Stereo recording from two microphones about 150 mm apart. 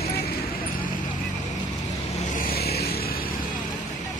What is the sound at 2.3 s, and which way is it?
Vehicle, 75° left (ahead or behind).